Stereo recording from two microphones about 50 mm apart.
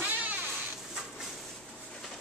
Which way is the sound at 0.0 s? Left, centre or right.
Right.